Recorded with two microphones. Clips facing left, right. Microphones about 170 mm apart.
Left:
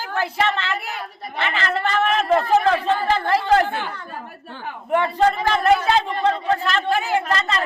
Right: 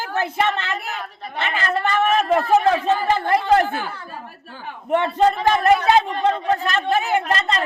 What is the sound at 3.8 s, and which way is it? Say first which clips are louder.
Speech: even; 5° right (ahead or behind).